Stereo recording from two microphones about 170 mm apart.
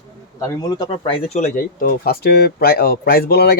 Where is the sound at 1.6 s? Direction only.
60° left (ahead or behind).